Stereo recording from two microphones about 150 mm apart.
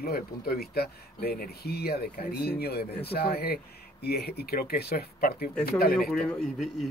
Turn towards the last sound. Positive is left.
turn(degrees=0)  # may be behind; listen again after turning